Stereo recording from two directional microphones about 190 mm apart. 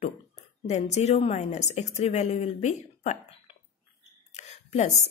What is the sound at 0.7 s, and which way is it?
Speech, 35° left (ahead or behind).